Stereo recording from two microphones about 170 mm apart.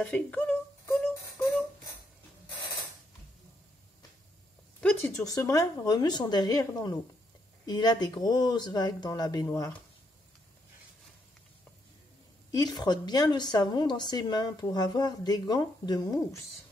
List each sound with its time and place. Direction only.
0.0 s beatboxing: 10° left (ahead or behind)
4.7 s a sound: 10° left (ahead or behind)
5.2 s a woman's voice: 20° left (ahead or behind)
7.6 s a woman's voice: 25° left (ahead or behind)
12.4 s a woman's voice: 20° left (ahead or behind)